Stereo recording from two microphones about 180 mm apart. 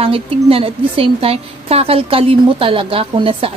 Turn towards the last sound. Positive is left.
turn(degrees=-30)  # may be behind; listen again after turning